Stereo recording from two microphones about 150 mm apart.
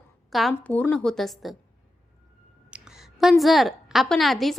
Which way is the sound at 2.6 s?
5° right (ahead or behind).